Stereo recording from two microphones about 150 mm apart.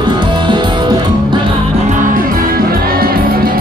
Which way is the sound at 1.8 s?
70° right (ahead or behind).